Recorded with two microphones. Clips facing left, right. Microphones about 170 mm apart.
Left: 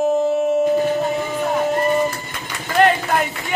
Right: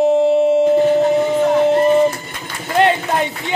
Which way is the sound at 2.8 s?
25° right (ahead or behind).